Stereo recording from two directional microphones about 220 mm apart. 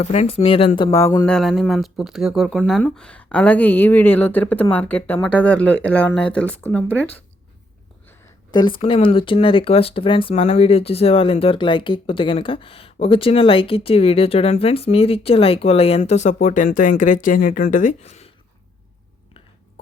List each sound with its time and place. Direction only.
0.0 s speech: 30° left (ahead or behind); by 6.9 s 10° left (ahead or behind)
8.5 s speech: 20° left (ahead or behind)